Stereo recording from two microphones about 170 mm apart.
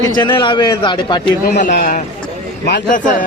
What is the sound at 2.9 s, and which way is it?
Speech, 50° left (ahead or behind).